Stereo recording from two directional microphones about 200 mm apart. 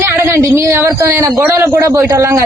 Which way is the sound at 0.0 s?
10° right (ahead or behind).